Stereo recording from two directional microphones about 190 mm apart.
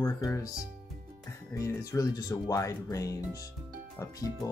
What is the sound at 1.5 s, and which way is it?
Speech, 15° left (ahead or behind).